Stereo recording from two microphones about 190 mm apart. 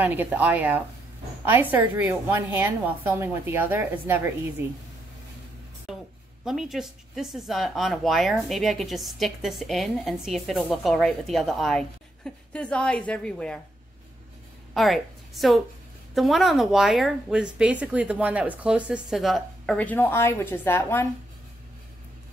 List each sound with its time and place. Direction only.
0.0 s speech: 10° right (ahead or behind)
5.9 s a woman's voice: 5° right (ahead or behind)
14.7 s a woman's voice: centre (ahead or behind)